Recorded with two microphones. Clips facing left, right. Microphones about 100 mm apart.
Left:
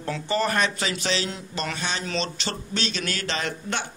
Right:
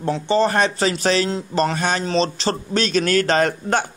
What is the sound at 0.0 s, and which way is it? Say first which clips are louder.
A man's voice: right 7 dB; 30° right (ahead or behind).